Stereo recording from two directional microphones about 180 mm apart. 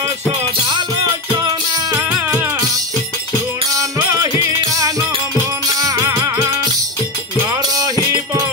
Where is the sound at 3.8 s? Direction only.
15° right (ahead or behind).